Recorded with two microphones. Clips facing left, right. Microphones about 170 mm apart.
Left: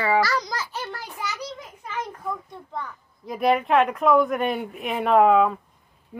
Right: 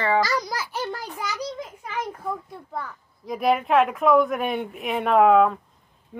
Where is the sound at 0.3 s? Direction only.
10° right (ahead or behind).